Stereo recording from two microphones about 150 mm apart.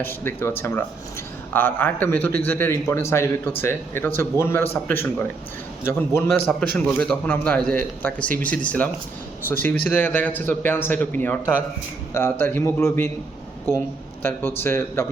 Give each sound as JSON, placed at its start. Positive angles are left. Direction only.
{"t": 0.0, "sound": "a man's voice", "side_deg": 15}
{"t": 14.2, "sound": "a man's voice", "side_deg": 15}